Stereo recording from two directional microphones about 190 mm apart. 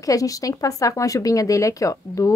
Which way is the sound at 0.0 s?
20° left (ahead or behind).